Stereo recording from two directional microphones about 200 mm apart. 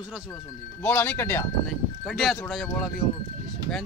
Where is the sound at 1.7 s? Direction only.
Centre (ahead or behind).